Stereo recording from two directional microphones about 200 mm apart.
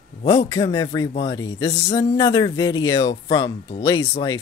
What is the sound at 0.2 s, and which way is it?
Speech, 25° left (ahead or behind).